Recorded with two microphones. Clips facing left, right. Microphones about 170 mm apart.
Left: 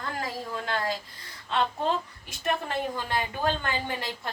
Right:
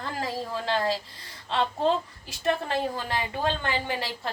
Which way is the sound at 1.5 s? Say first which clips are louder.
Right 2 dB; 30° right (ahead or behind).